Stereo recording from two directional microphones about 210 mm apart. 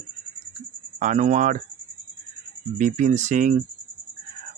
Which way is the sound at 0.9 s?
35° right (ahead or behind).